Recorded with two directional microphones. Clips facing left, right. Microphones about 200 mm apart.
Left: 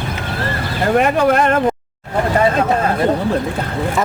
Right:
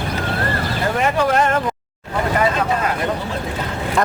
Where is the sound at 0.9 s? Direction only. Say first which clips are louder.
Left 4 dB; 55° left (ahead or behind).